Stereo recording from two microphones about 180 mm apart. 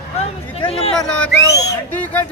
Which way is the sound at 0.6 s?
35° left (ahead or behind).